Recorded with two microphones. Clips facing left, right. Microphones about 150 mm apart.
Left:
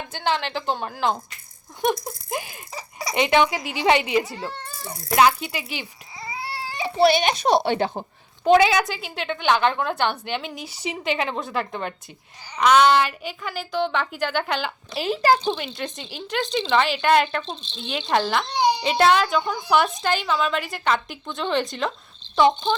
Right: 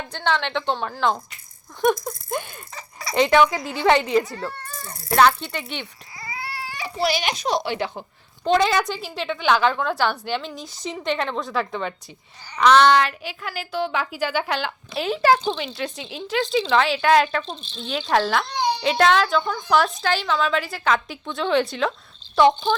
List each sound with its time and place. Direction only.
0.1 s a woman's voice: 5° left (ahead or behind)
2.4 s speech: 5° left (ahead or behind)
4.4 s a sound: 20° left (ahead or behind)
4.9 s a sound: centre (ahead or behind)
5.1 s a child's voice: 10° left (ahead or behind)
6.2 s baby cry: 25° left (ahead or behind)
7.4 s speech: 60° left (ahead or behind)
7.8 s speech: 40° left (ahead or behind)
8.5 s a woman's voice: 5° left (ahead or behind)
10.6 s speech: 70° left (ahead or behind)
10.8 s a woman's voice: 5° left (ahead or behind)
18.4 s a child's voice: 20° left (ahead or behind)
18.9 s a woman's voice: centre (ahead or behind)
19.4 s a woman's voice: 15° left (ahead or behind)